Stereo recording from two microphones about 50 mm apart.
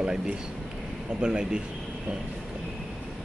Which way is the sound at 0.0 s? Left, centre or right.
Centre.